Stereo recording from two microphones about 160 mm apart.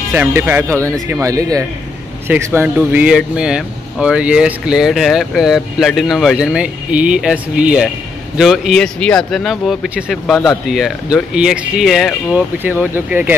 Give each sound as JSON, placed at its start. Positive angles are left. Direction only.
{"t": 0.1, "sound": "speech", "side_deg": -15}